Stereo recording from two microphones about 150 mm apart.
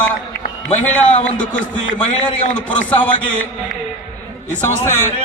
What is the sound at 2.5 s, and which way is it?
Speech, 10° left (ahead or behind).